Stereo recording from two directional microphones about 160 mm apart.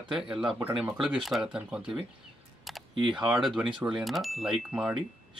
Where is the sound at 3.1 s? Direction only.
5° right (ahead or behind).